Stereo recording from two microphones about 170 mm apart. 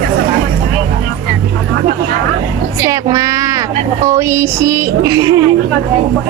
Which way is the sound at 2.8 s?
20° right (ahead or behind).